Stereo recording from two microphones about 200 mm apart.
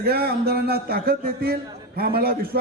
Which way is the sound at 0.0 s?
50° right (ahead or behind).